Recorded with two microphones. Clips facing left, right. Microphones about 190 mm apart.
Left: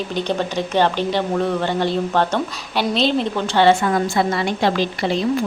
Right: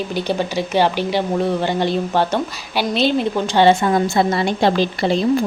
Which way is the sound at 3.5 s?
15° right (ahead or behind).